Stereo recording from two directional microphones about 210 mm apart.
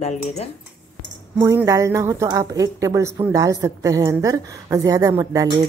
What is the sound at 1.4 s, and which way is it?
A woman's voice, 10° right (ahead or behind).